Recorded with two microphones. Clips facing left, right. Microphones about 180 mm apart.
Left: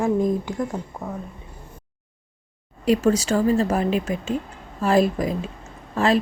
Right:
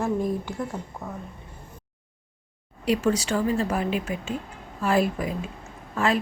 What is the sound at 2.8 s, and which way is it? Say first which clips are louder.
A woman's voice: left 4 dB; 40° left (ahead or behind).